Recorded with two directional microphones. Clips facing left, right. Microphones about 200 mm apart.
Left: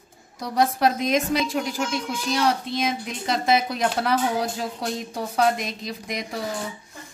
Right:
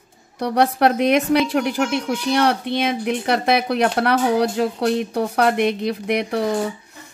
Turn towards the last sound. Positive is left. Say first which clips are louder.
# right 9 dB
turn(degrees=-65)  # may be behind; listen again after turning